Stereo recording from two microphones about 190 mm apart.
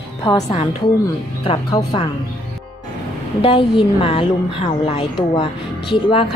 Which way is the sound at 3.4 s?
25° left (ahead or behind).